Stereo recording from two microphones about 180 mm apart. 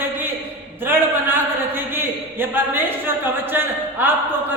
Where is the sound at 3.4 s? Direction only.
10° right (ahead or behind).